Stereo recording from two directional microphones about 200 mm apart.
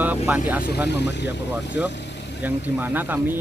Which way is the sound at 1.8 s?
5° right (ahead or behind).